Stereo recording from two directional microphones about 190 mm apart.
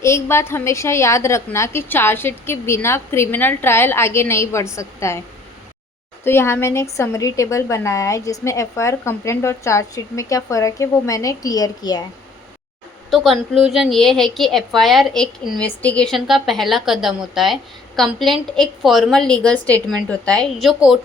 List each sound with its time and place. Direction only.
0.0 s a woman's voice: 15° left (ahead or behind)
6.2 s a woman's voice: 15° left (ahead or behind)
13.1 s a woman's voice: centre (ahead or behind)